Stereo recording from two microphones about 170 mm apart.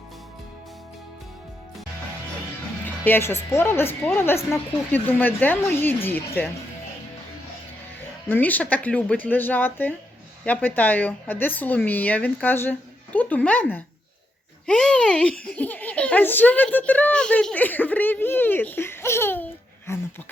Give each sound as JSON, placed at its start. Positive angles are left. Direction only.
{"t": 2.8, "sound": "a child's voice", "side_deg": 10}
{"t": 8.3, "sound": "a child's voice", "side_deg": 10}